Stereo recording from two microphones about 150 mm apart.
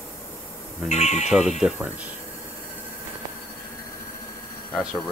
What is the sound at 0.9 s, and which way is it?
Speech, 50° left (ahead or behind).